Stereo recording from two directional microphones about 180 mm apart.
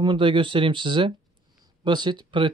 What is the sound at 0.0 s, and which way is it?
Speech, 25° right (ahead or behind).